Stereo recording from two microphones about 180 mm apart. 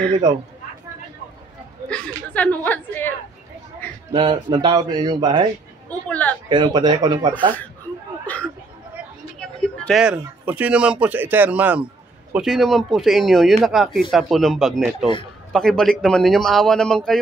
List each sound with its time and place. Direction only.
1.9 s a woman's voice: 5° left (ahead or behind)
4.1 s speech: 25° right (ahead or behind)
5.9 s a sound: 5° left (ahead or behind)
6.5 s speech: 25° right (ahead or behind)
9.4 s a man's voice: centre (ahead or behind)